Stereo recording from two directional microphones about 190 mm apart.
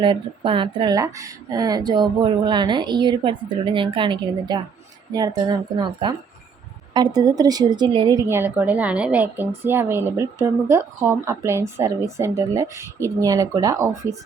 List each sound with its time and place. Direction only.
0.0 s speech: 25° right (ahead or behind)